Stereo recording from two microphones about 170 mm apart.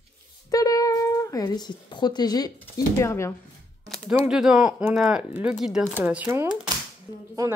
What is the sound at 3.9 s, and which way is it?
Typing, 5° left (ahead or behind).